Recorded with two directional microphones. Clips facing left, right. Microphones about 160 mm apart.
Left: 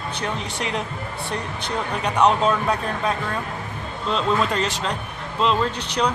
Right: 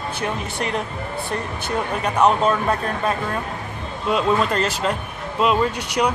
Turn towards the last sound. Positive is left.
turn(degrees=-10)  # may be behind; listen again after turning